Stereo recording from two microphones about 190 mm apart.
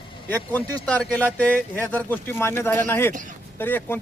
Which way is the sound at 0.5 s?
5° left (ahead or behind).